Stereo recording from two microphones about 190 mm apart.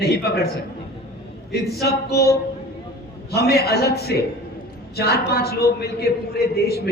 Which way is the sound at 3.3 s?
55° left (ahead or behind).